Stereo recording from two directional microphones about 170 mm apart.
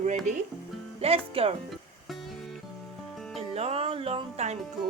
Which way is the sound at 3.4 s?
35° right (ahead or behind).